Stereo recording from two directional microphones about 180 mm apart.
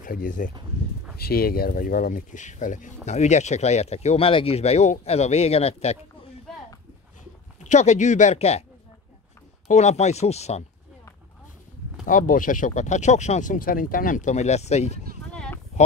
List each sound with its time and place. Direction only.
0.0 s speech: 50° left (ahead or behind)
7.6 s speech: 40° left (ahead or behind)
9.7 s speech: 40° left (ahead or behind)
12.1 s speech: 50° left (ahead or behind)
15.3 s a sound: 5° left (ahead or behind)